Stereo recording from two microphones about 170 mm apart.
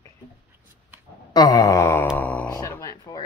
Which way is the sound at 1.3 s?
20° left (ahead or behind).